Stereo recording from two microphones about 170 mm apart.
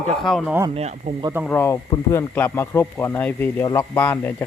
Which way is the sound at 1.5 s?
15° left (ahead or behind).